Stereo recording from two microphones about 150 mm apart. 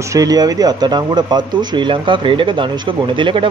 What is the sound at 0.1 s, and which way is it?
Speech, 25° right (ahead or behind).